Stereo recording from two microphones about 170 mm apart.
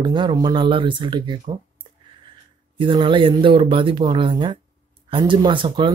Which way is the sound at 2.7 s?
30° right (ahead or behind).